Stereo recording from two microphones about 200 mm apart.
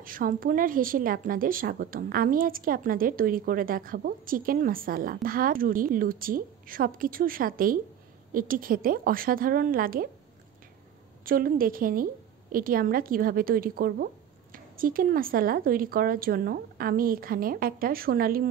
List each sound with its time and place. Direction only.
0.0 s a woman's voice: 45° right (ahead or behind)
11.2 s a woman's voice: 45° right (ahead or behind)